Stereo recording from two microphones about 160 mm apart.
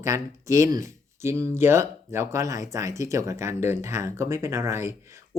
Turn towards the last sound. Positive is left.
turn(degrees=-15)  # may be behind; listen again after turning